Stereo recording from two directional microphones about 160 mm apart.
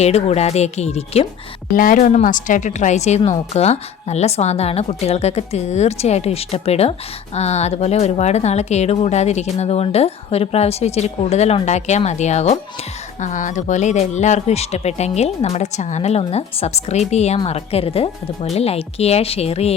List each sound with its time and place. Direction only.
0.0 s speech: 40° left (ahead or behind)
1.7 s speech: 60° left (ahead or behind); by 19.7 s 40° left (ahead or behind)